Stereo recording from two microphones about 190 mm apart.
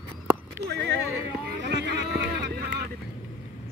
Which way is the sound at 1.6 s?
65° right (ahead or behind).